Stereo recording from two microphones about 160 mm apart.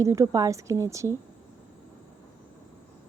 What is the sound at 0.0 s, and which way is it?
Speech, 20° right (ahead or behind).